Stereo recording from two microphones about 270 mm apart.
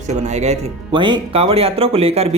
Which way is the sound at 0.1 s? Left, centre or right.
Right.